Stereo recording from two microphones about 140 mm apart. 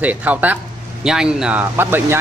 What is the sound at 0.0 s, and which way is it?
Speech, 10° right (ahead or behind).